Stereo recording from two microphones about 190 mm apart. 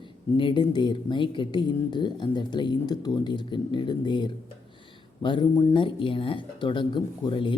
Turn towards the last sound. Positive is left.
turn(degrees=25)  # may be behind; listen again after turning